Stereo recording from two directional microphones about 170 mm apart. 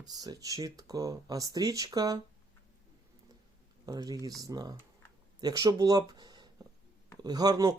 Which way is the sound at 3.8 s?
20° right (ahead or behind).